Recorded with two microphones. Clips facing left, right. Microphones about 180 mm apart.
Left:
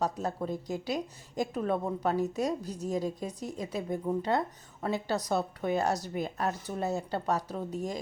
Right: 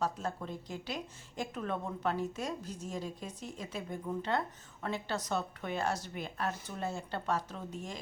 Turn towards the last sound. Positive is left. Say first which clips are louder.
# left 8 dB
turn(degrees=40)  # may be behind; listen again after turning